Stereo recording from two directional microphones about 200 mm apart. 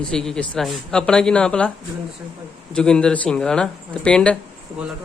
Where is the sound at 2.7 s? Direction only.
5° left (ahead or behind).